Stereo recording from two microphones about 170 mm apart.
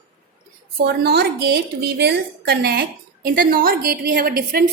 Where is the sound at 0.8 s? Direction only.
70° right (ahead or behind).